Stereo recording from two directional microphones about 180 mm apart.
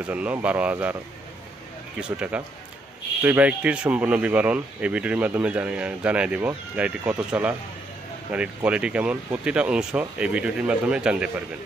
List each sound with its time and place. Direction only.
0.0 s speech: 5° right (ahead or behind)
2.0 s speech: 5° right (ahead or behind)